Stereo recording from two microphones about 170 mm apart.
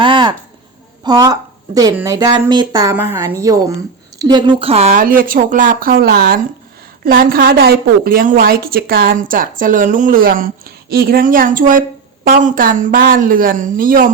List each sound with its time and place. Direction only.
0.0 s a sound: 30° right (ahead or behind)
1.0 s a woman's voice: 20° right (ahead or behind)
4.9 s a woman's voice: 55° right (ahead or behind)